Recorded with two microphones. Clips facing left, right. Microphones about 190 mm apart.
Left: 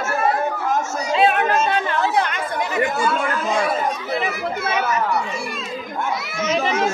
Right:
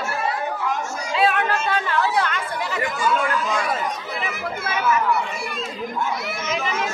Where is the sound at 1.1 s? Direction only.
20° left (ahead or behind).